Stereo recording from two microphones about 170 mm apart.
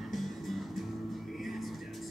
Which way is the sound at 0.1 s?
Centre (ahead or behind).